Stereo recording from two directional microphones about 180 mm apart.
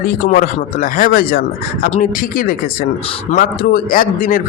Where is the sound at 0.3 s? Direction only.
50° left (ahead or behind).